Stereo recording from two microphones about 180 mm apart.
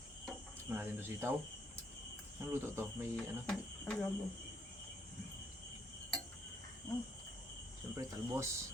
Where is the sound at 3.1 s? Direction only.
5° left (ahead or behind).